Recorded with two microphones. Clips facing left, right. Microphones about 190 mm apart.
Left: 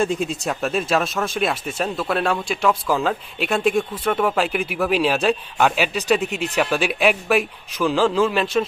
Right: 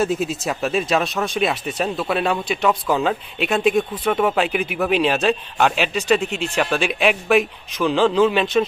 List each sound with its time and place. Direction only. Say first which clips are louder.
0.0 s speech: right 1 dB; 5° right (ahead or behind)